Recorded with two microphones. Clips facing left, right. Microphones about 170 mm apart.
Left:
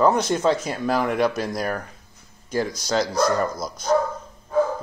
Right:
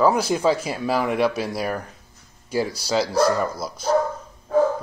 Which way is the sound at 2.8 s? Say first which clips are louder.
Right 2 dB; 5° right (ahead or behind).